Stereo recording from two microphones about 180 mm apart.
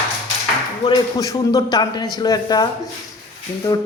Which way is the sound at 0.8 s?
20° left (ahead or behind).